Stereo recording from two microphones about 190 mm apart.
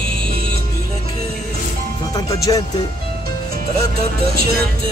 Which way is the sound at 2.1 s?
20° left (ahead or behind).